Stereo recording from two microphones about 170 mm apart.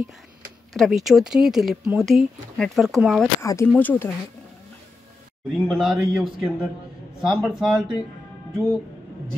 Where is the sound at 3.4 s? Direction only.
15° left (ahead or behind).